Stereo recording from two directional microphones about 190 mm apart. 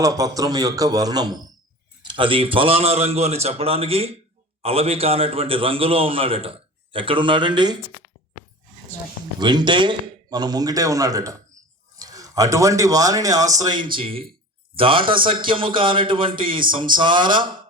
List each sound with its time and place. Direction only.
0.0 s a man's voice: 20° right (ahead or behind)
9.4 s a man's voice: 25° right (ahead or behind)